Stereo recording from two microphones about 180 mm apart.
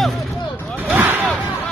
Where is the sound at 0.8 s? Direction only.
10° right (ahead or behind).